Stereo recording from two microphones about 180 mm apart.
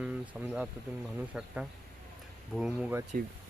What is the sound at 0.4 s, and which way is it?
Speech, 10° right (ahead or behind).